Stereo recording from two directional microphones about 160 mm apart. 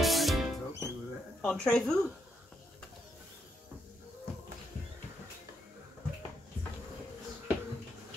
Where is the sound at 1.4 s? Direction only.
5° left (ahead or behind).